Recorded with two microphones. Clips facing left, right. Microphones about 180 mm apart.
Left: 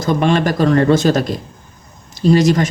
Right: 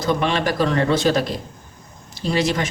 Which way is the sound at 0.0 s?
45° left (ahead or behind).